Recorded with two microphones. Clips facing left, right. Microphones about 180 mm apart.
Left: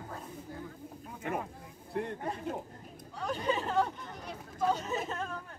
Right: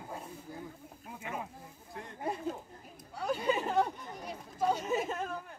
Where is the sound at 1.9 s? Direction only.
60° left (ahead or behind).